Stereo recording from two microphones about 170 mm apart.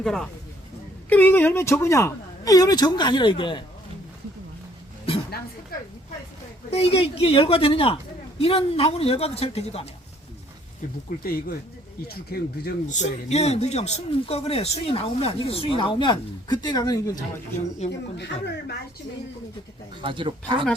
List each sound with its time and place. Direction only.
0.0 s speech: 5° left (ahead or behind); by 3.6 s 30° left (ahead or behind)
6.7 s speech: 35° left (ahead or behind)
11.2 s speech: 60° left (ahead or behind)
12.9 s speech: 45° left (ahead or behind); by 17.2 s 20° left (ahead or behind)
18.2 s speech: 90° left
20.0 s speech: 30° right (ahead or behind)